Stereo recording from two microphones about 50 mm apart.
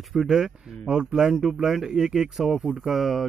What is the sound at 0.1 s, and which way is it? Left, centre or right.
Speech, centre.